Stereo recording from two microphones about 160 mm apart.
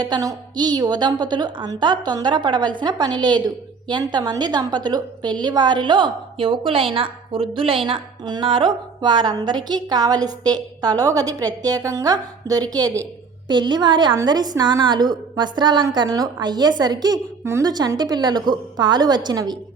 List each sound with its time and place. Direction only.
0.0 s a woman's voice: 25° right (ahead or behind)